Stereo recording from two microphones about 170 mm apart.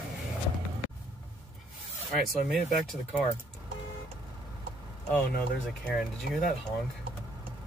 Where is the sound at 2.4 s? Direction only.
Centre (ahead or behind).